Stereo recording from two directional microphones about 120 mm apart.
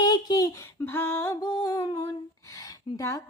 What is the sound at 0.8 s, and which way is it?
Female singing, 20° left (ahead or behind).